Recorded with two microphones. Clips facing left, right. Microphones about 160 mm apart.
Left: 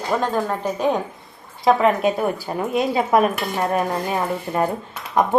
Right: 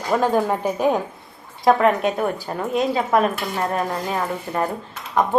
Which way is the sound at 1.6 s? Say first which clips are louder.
Even; centre (ahead or behind).